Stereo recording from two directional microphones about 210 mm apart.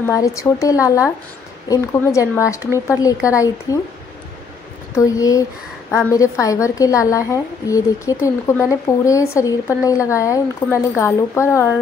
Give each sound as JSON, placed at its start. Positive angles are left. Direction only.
{"t": 0.0, "sound": "a woman's voice", "side_deg": 15}
{"t": 4.9, "sound": "a woman's voice", "side_deg": 15}